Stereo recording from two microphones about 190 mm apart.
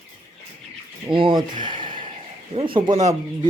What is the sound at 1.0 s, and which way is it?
Speech, 25° right (ahead or behind).